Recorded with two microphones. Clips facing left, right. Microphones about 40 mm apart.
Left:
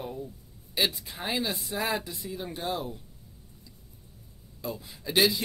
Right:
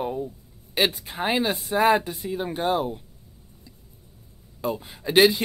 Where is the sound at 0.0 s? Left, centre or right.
Right.